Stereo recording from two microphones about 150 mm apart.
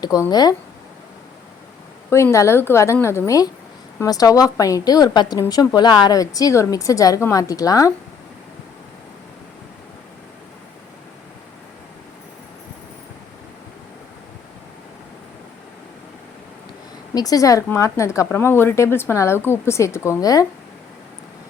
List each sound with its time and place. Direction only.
0.0 s speech: 25° left (ahead or behind)
2.0 s a woman's voice: 15° left (ahead or behind)
17.2 s speech: 25° left (ahead or behind)